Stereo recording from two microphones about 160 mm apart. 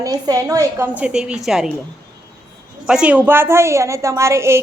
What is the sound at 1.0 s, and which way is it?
Speech, 5° right (ahead or behind).